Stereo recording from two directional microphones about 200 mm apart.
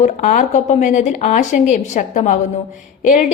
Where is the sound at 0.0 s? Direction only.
40° left (ahead or behind).